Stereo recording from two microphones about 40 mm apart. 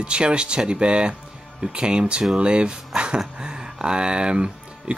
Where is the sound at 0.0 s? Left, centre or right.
Right.